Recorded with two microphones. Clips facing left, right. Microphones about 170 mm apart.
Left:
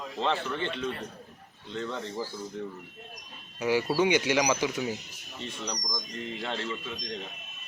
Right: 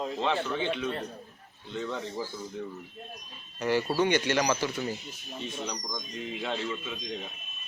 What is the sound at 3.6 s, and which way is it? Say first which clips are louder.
Speech: left 1 dB; 10° left (ahead or behind).